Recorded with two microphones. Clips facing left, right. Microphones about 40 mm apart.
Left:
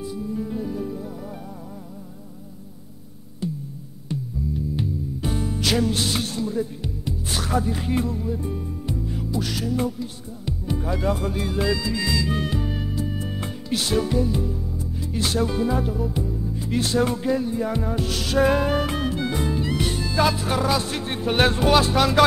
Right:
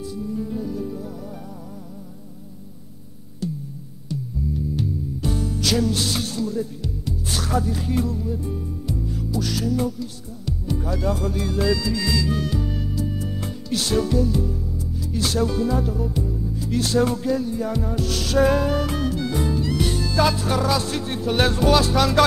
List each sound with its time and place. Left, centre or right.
0.0 s music: centre
3.4 s music: left
4.7 s music: left
14.8 s speech: left
16.3 s music: centre
16.5 s speech: left
20.2 s music: left